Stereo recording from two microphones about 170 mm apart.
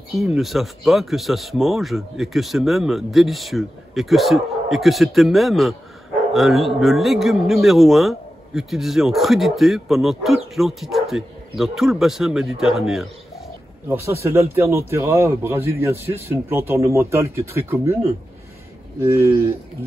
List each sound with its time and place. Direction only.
0.1 s a man's voice: centre (ahead or behind)
14.0 s a man's voice: 15° right (ahead or behind)